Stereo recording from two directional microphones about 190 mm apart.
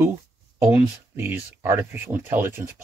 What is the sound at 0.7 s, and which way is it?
Speech, 10° right (ahead or behind).